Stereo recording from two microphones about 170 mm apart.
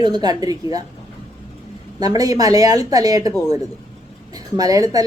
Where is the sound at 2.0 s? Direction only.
20° right (ahead or behind).